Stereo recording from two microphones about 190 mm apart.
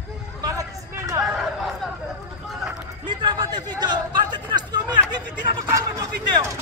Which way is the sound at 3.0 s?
25° right (ahead or behind).